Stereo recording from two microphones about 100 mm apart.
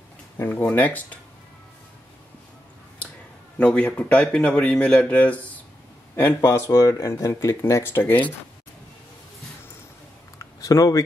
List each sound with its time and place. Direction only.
0.4 s speech: 15° left (ahead or behind)
3.5 s speech: 10° left (ahead or behind)
6.1 s speech: 25° left (ahead or behind)
10.4 s a sound: 35° left (ahead or behind)